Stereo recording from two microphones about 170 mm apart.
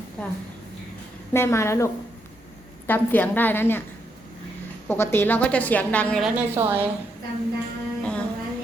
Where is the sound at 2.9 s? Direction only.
10° left (ahead or behind).